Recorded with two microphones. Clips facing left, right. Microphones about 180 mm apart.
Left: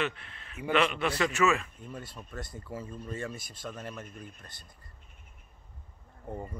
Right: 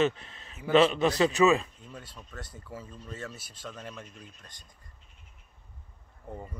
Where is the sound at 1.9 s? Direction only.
10° left (ahead or behind).